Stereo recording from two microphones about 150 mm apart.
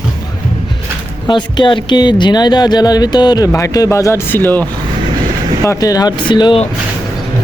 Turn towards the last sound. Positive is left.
turn(degrees=30)  # may be behind; listen again after turning